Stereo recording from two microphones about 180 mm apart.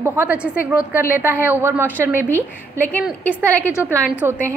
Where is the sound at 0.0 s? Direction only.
10° right (ahead or behind).